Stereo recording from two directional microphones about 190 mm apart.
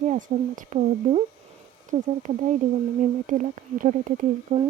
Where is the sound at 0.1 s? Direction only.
40° right (ahead or behind).